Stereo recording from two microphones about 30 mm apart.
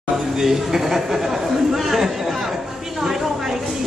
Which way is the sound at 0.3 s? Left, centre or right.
Centre.